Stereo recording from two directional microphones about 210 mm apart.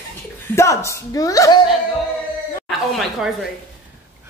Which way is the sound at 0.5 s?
15° left (ahead or behind).